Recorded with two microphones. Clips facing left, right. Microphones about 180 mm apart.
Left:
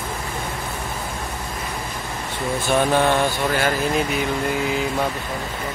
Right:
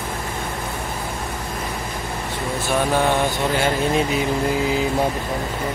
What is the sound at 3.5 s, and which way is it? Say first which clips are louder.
Speech: right 3 dB; 25° right (ahead or behind).